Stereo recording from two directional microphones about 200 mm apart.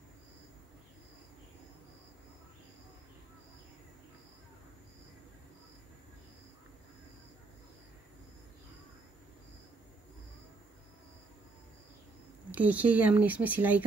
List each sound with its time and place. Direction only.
12.4 s speech: 10° right (ahead or behind)